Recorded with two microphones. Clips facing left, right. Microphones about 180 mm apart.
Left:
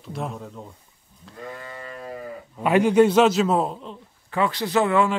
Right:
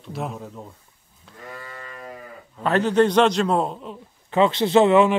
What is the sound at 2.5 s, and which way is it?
Speech, 10° left (ahead or behind).